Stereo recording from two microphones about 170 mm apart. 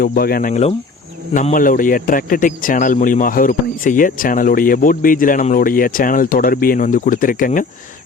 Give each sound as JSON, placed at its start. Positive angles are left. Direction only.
{"t": 0.0, "sound": "speech", "side_deg": 60}
{"t": 1.3, "sound": "a man's voice", "side_deg": 50}